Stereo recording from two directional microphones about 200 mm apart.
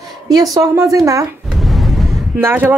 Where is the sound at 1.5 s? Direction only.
Centre (ahead or behind).